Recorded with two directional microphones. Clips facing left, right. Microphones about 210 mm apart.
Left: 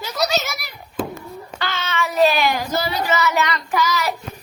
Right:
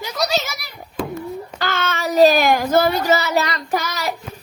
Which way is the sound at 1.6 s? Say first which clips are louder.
Right 1 dB; 50° right (ahead or behind).